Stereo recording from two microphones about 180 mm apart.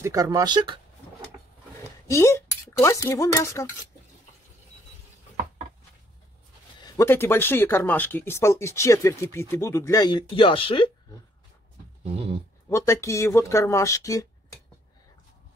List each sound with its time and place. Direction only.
0.0 s speech: 20° right (ahead or behind)
2.0 s speech: 15° left (ahead or behind)
6.8 s speech: 15° left (ahead or behind)
12.6 s speech: 15° left (ahead or behind)